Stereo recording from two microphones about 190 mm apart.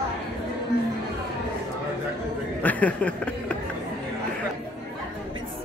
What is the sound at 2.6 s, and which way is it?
Speech, 5° left (ahead or behind).